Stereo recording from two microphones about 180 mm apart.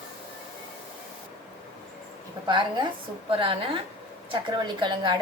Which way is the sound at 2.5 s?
25° right (ahead or behind).